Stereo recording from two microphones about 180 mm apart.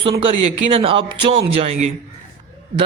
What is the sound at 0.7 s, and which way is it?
A man's voice, 30° right (ahead or behind).